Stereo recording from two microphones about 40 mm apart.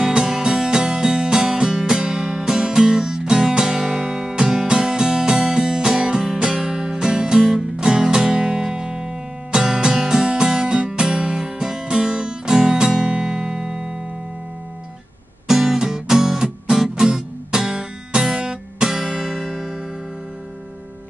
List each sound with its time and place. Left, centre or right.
0.0 s music: centre
15.4 s music: centre